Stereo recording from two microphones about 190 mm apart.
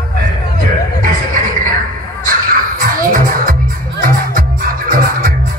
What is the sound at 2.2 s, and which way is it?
Music, 45° right (ahead or behind).